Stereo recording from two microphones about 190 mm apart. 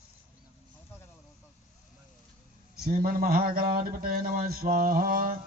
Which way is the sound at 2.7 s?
50° right (ahead or behind).